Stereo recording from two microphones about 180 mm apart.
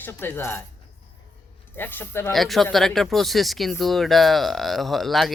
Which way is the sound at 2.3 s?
Centre (ahead or behind).